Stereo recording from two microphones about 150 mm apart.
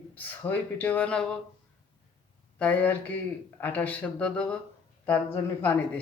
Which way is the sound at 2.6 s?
10° left (ahead or behind).